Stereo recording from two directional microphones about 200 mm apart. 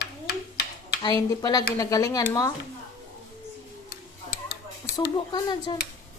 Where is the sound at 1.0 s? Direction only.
20° left (ahead or behind).